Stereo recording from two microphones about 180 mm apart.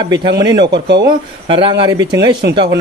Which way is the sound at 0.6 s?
70° right (ahead or behind).